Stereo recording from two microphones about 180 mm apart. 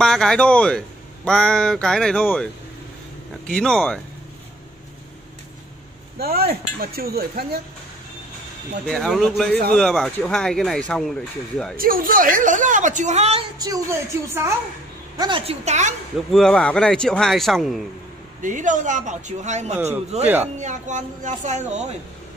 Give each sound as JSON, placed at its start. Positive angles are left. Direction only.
{"t": 0.0, "sound": "speech", "side_deg": 5}
{"t": 3.4, "sound": "speech", "side_deg": 5}
{"t": 6.1, "sound": "speech", "side_deg": -60}
{"t": 8.8, "sound": "speech", "side_deg": 0}
{"t": 11.7, "sound": "a woman's voice", "side_deg": -55}
{"t": 13.6, "sound": "a woman's voice", "side_deg": -15}
{"t": 15.1, "sound": "a woman's voice", "side_deg": -25}
{"t": 16.3, "sound": "speech", "side_deg": 5}
{"t": 18.4, "sound": "a woman's voice", "side_deg": -45}